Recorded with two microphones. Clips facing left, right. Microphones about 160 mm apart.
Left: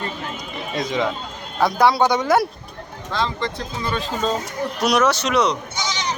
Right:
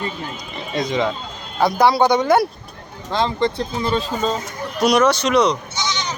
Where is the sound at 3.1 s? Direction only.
25° right (ahead or behind).